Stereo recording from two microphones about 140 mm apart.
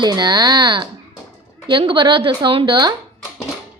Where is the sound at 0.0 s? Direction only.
30° right (ahead or behind).